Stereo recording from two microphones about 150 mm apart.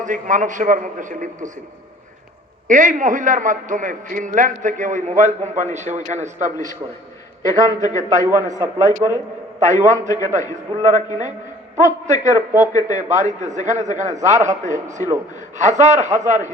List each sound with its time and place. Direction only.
0.0 s a man's voice: 60° right (ahead or behind)
2.6 s a man's voice: 60° right (ahead or behind)
8.4 s a man's voice: 20° right (ahead or behind)
9.0 s a man's voice: 35° right (ahead or behind)
9.6 s a man's voice: 55° right (ahead or behind)